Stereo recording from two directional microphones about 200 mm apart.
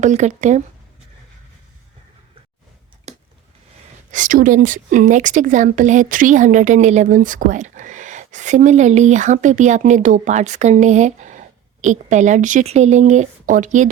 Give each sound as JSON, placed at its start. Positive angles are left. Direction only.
{"t": 0.0, "sound": "speech", "side_deg": -35}
{"t": 3.1, "sound": "a sound", "side_deg": -35}
{"t": 4.1, "sound": "speech", "side_deg": -40}